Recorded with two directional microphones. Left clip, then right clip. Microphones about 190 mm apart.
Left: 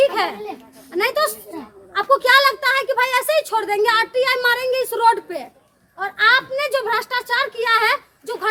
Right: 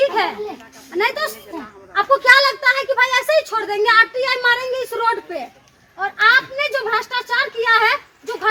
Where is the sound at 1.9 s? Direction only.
25° left (ahead or behind).